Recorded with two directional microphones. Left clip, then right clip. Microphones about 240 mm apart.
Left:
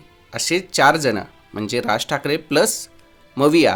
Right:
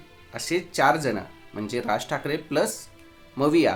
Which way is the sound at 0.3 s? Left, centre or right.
Left.